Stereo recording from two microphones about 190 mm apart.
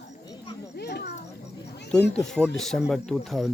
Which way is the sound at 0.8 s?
60° left (ahead or behind).